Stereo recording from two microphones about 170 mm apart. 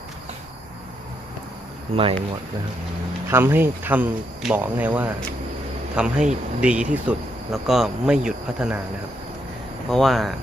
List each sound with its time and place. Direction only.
2.0 s speech: 35° right (ahead or behind)
3.2 s speech: 10° right (ahead or behind)
9.9 s speech: centre (ahead or behind)